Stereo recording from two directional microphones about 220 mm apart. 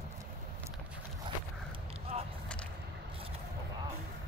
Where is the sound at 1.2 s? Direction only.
25° right (ahead or behind).